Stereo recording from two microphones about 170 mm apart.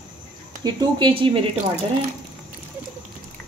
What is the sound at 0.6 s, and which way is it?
Speech, 25° right (ahead or behind).